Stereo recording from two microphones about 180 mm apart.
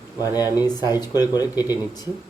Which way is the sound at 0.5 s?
20° left (ahead or behind).